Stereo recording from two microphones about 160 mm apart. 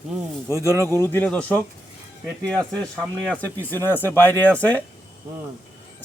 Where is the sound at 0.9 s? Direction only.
15° left (ahead or behind).